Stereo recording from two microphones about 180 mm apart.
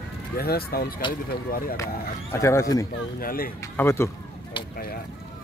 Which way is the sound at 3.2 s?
55° left (ahead or behind).